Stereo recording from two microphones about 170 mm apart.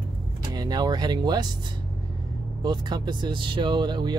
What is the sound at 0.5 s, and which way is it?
Speech, 25° right (ahead or behind).